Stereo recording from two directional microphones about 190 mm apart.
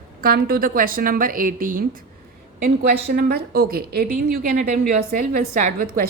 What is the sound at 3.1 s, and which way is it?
A woman's voice, 55° right (ahead or behind).